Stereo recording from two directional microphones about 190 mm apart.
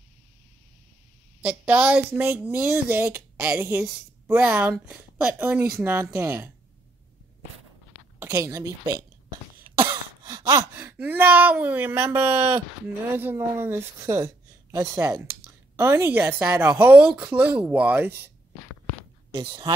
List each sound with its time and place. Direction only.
1.4 s speech: 5° right (ahead or behind)
8.2 s speech: 15° right (ahead or behind)
19.3 s speech: 20° right (ahead or behind)